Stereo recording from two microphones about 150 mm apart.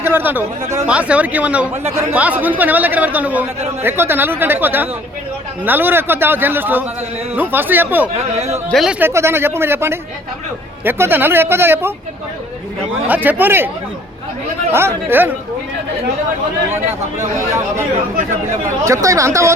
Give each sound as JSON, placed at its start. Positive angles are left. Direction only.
{"t": 0.0, "sound": "speech", "side_deg": -15}
{"t": 8.4, "sound": "a man's voice", "side_deg": -45}
{"t": 8.7, "sound": "speech", "side_deg": 0}
{"t": 9.0, "sound": "speech", "side_deg": -15}
{"t": 13.1, "sound": "speech", "side_deg": -10}
{"t": 14.7, "sound": "speech", "side_deg": -15}
{"t": 18.9, "sound": "speech", "side_deg": -20}